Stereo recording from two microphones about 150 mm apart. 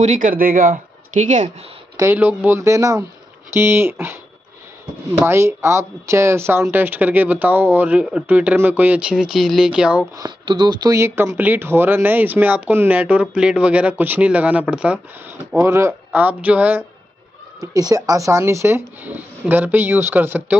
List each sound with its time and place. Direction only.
0.0 s speech: 55° right (ahead or behind)
2.0 s speech: 15° right (ahead or behind)
5.2 s speech: 15° right (ahead or behind)
10.1 s speech: 25° right (ahead or behind); by 16.8 s 10° right (ahead or behind)
17.6 s speech: 25° right (ahead or behind)